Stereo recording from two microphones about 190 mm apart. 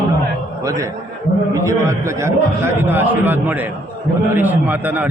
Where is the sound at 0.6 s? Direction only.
15° right (ahead or behind).